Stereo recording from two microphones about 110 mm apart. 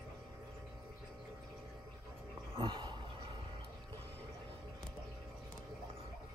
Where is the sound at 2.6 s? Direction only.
50° right (ahead or behind).